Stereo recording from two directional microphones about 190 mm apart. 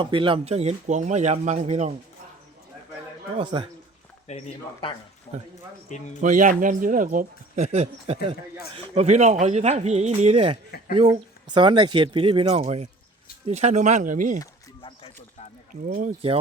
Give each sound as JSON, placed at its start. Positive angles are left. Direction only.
{"t": 0.0, "sound": "speech", "side_deg": -25}
{"t": 3.3, "sound": "speech", "side_deg": -25}
{"t": 4.3, "sound": "speech", "side_deg": 35}
{"t": 6.2, "sound": "speech", "side_deg": -40}
{"t": 14.3, "sound": "a sound", "side_deg": 25}
{"t": 15.7, "sound": "speech", "side_deg": -45}